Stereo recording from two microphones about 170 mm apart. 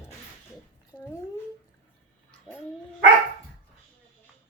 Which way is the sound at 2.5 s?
5° left (ahead or behind).